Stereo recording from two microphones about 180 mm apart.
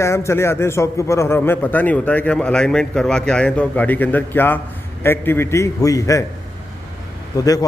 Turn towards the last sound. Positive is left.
turn(degrees=20)  # may be behind; listen again after turning